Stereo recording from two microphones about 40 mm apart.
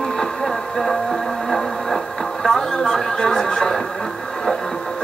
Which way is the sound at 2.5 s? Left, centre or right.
Centre.